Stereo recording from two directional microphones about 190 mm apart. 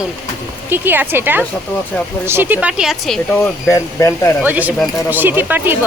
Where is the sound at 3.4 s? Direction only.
15° left (ahead or behind).